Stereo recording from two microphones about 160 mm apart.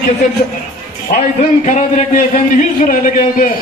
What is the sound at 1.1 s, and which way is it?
A man's voice, 50° left (ahead or behind).